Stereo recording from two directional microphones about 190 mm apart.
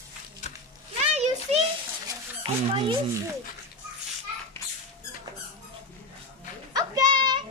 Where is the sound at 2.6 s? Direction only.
30° right (ahead or behind).